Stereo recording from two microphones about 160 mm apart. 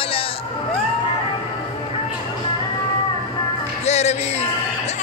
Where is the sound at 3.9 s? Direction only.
45° left (ahead or behind).